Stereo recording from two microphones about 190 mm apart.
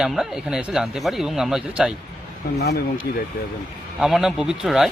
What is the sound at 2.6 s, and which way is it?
Speech, 60° left (ahead or behind).